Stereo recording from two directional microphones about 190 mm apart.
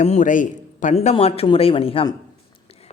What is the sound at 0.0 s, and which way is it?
Speech, 40° left (ahead or behind).